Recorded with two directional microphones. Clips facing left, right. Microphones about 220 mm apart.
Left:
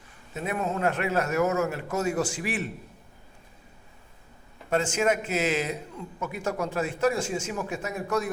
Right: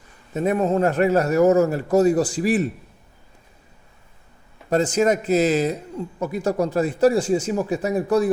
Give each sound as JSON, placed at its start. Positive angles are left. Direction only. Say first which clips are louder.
{"t": 0.3, "sound": "a man's voice", "louder": "right 10 dB", "side_deg": -40}
{"t": 4.7, "sound": "a man's voice", "louder": "right 6 dB", "side_deg": -35}